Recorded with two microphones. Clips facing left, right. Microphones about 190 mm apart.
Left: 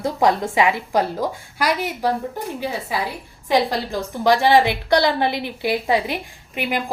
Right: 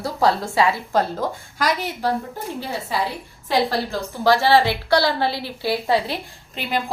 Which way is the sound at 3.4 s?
15° left (ahead or behind).